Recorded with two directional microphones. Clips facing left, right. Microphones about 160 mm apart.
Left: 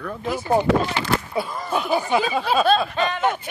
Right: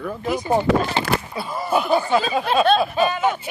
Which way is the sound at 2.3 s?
Centre (ahead or behind).